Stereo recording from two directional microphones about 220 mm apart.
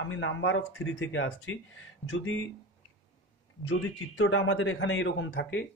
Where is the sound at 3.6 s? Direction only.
75° left (ahead or behind).